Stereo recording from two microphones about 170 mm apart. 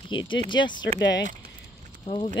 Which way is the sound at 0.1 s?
30° left (ahead or behind).